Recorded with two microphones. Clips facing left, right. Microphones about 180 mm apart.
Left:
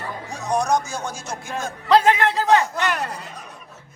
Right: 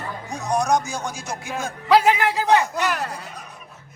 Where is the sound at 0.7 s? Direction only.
15° right (ahead or behind).